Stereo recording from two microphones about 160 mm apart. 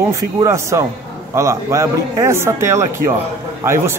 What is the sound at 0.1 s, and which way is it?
A man's voice, 20° right (ahead or behind).